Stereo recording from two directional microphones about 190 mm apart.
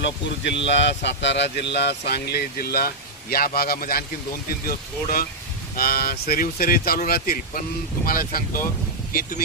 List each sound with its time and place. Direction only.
0.0 s speech: 70° left (ahead or behind); by 8.6 s 50° left (ahead or behind)